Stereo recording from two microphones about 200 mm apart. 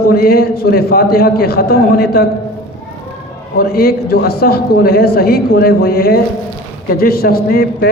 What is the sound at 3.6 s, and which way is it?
Speech, 50° left (ahead or behind).